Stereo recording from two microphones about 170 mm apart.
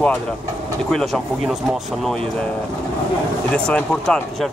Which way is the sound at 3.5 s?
5° left (ahead or behind).